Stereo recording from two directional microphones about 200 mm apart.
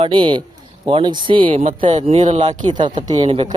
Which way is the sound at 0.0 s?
25° right (ahead or behind).